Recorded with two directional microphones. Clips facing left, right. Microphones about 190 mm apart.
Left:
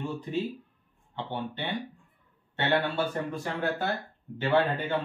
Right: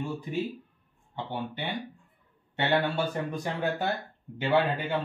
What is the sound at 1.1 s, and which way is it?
A man's voice, 10° right (ahead or behind).